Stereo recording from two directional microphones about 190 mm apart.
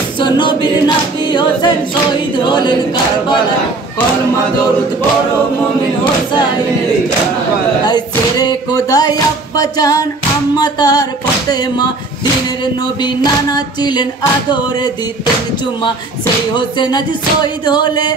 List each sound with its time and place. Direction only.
0.2 s a capella: 25° left (ahead or behind)
2.4 s music: 25° left (ahead or behind)
7.8 s music: 20° left (ahead or behind)
13.0 s music: 20° left (ahead or behind)
16.5 s music: 25° left (ahead or behind)